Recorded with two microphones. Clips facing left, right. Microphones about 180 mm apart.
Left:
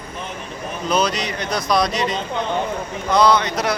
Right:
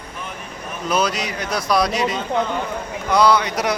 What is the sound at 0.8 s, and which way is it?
Speech, 5° right (ahead or behind).